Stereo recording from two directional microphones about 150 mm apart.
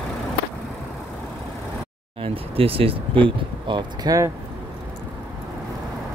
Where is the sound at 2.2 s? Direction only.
40° right (ahead or behind).